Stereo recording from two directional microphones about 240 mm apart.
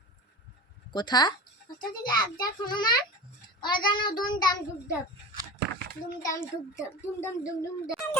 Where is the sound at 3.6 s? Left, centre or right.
Centre.